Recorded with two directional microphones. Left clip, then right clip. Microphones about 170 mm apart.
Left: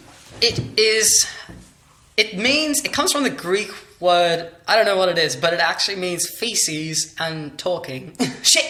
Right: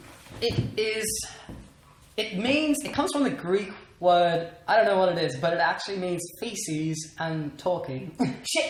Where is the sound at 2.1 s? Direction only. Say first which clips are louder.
Left 8 dB; 5° left (ahead or behind).